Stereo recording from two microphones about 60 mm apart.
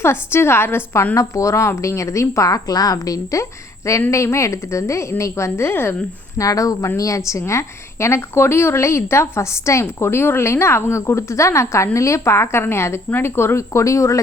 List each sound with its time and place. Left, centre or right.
0.0 s a woman's voice: left
1.1 s a woman's voice: left
4.1 s a woman's voice: left
6.3 s speech: left
6.8 s a woman's voice: left